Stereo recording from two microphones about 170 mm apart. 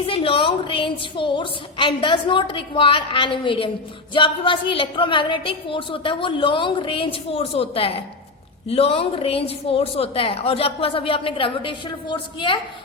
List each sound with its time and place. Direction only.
0.0 s a woman's voice: 30° left (ahead or behind)